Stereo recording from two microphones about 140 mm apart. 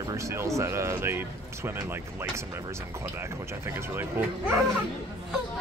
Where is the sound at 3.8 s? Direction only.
15° right (ahead or behind).